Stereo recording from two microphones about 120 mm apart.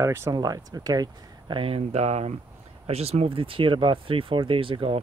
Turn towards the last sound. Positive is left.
turn(degrees=-50)  # may be behind; listen again after turning